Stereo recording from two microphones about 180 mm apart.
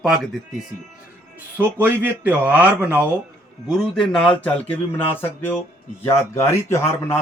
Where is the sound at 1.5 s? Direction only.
10° right (ahead or behind).